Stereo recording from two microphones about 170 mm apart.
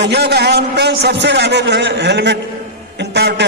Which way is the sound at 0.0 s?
75° right (ahead or behind).